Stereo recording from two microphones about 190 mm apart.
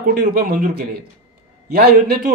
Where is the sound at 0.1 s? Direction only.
50° right (ahead or behind).